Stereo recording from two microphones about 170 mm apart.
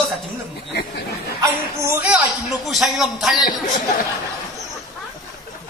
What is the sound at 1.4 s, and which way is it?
A man's voice, 15° right (ahead or behind).